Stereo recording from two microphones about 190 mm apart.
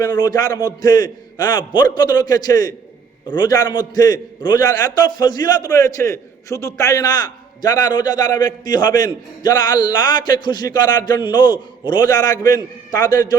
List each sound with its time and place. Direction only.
0.0 s a man's voice: 20° left (ahead or behind)